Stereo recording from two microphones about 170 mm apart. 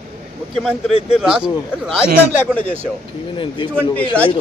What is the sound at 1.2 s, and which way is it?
Speech, 5° right (ahead or behind).